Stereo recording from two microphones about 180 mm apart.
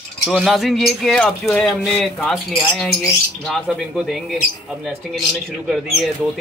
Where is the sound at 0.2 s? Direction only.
Centre (ahead or behind).